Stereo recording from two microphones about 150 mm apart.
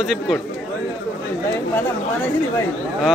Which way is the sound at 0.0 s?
5° right (ahead or behind).